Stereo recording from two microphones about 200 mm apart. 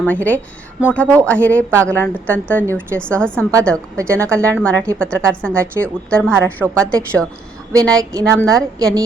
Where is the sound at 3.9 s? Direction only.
15° right (ahead or behind).